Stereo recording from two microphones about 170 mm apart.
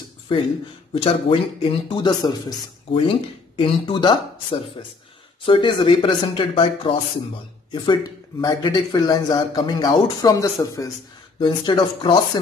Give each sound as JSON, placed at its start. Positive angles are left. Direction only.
{"t": 0.3, "sound": "speech", "side_deg": 30}
{"t": 7.7, "sound": "speech", "side_deg": 25}